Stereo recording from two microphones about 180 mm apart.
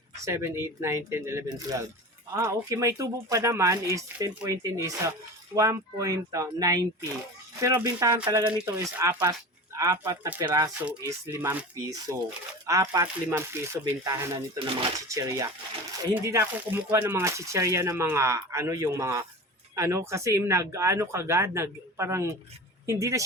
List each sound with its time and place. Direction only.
0.3 s speech: 15° right (ahead or behind)